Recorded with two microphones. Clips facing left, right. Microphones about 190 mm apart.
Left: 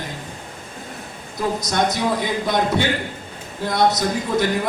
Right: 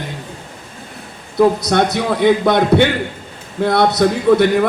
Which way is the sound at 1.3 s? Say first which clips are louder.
Right 9 dB; 65° right (ahead or behind).